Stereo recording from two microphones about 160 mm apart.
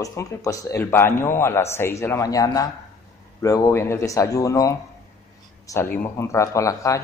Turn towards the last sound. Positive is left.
turn(degrees=20)  # may be behind; listen again after turning